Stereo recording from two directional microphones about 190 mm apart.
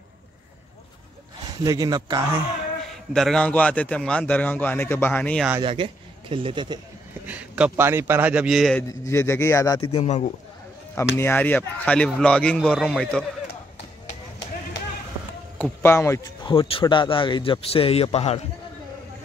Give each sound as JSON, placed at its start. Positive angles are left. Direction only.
{"t": 1.6, "sound": "speech", "side_deg": -20}
{"t": 2.9, "sound": "a man's voice", "side_deg": 0}
{"t": 5.6, "sound": "a man's voice", "side_deg": -25}
{"t": 7.2, "sound": "a man's voice", "side_deg": -5}
{"t": 8.8, "sound": "a man's voice", "side_deg": 15}
{"t": 9.9, "sound": "speech", "side_deg": 35}
{"t": 11.1, "sound": "a man's voice", "side_deg": 10}
{"t": 15.6, "sound": "speech", "side_deg": 15}